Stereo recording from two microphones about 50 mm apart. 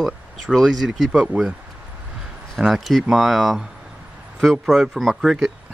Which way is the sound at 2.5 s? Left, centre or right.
Centre.